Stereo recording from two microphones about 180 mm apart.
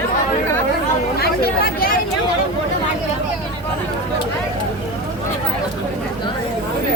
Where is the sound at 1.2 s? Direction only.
55° left (ahead or behind).